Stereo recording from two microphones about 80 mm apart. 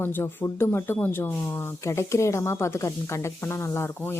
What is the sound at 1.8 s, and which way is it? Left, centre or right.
Speech, left.